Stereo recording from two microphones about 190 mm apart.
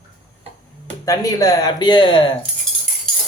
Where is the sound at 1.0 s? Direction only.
20° left (ahead or behind).